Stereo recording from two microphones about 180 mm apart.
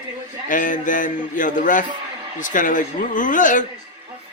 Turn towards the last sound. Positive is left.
turn(degrees=45)  # may be behind; listen again after turning